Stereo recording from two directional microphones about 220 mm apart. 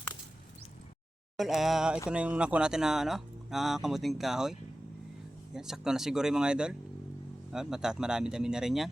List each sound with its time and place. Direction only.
1.4 s speech: centre (ahead or behind)
5.5 s speech: centre (ahead or behind)